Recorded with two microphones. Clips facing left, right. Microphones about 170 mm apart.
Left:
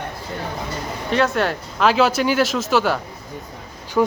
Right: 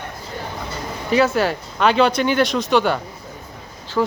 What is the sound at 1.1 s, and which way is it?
Speech, centre (ahead or behind).